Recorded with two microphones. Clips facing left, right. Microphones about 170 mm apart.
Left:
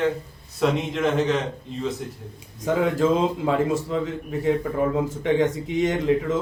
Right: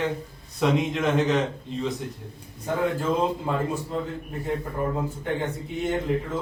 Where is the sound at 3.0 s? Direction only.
90° left.